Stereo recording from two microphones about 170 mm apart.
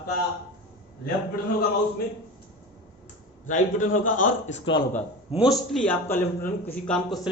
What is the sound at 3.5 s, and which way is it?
A man's voice, 50° left (ahead or behind).